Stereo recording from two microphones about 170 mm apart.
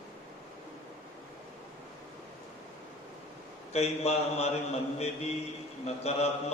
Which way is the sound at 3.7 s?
40° left (ahead or behind).